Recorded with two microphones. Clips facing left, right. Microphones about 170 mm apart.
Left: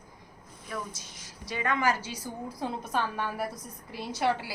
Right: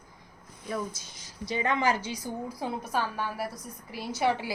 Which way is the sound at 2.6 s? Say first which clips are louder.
Left 1 dB; 5° right (ahead or behind).